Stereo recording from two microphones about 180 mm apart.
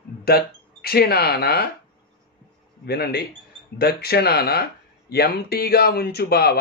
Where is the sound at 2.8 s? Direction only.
60° left (ahead or behind).